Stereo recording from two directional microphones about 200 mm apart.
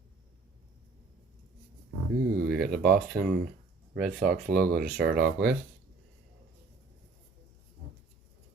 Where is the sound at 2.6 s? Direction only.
50° right (ahead or behind).